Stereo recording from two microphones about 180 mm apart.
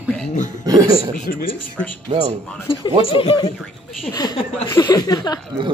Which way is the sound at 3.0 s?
30° left (ahead or behind).